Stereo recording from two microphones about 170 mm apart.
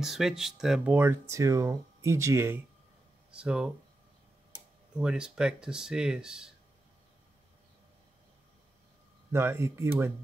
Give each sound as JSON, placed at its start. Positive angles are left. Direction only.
{"t": 0.0, "sound": "speech", "side_deg": 0}
{"t": 4.9, "sound": "speech", "side_deg": -5}
{"t": 9.3, "sound": "speech", "side_deg": -15}